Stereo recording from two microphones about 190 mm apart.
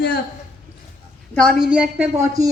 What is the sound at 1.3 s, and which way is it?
A woman's voice, centre (ahead or behind).